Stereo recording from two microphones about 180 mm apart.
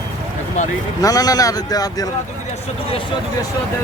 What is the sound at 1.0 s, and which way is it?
Speech, 20° left (ahead or behind).